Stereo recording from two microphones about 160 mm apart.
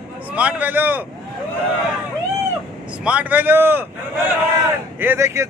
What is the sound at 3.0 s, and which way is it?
Speech, 10° right (ahead or behind).